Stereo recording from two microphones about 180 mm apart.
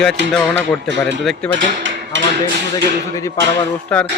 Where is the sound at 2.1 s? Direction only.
90° right.